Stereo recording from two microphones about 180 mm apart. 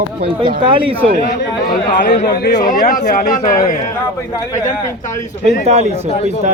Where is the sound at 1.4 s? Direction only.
50° left (ahead or behind).